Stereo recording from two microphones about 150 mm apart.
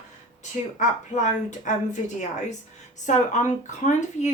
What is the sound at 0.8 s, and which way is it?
Speech, 55° left (ahead or behind).